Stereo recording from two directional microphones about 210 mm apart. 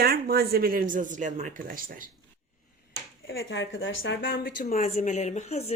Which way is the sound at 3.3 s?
65° left (ahead or behind).